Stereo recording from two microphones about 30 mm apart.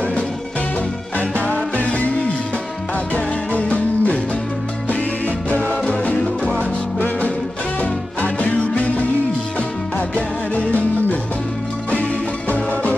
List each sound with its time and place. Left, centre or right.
1.5 s music: left
3.5 s music: left
8.5 s music: left